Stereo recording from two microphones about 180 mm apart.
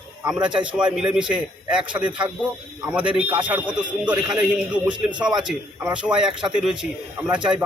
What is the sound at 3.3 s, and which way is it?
Speech, 25° right (ahead or behind).